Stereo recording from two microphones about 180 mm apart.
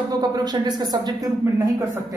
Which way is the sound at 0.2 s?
25° right (ahead or behind).